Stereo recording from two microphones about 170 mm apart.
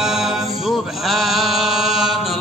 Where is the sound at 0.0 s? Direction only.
Centre (ahead or behind).